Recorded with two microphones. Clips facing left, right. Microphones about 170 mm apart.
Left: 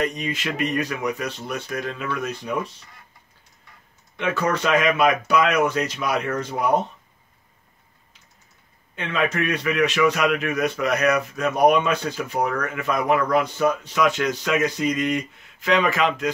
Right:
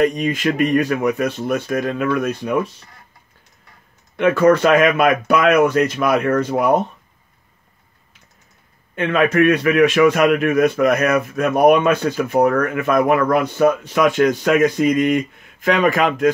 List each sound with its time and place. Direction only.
0.0 s a man's voice: 50° right (ahead or behind)
4.2 s a man's voice: 55° right (ahead or behind)
8.9 s a man's voice: 55° right (ahead or behind)